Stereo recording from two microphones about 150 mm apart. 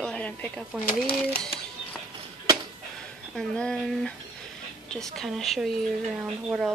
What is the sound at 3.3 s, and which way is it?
A woman's voice, 5° left (ahead or behind).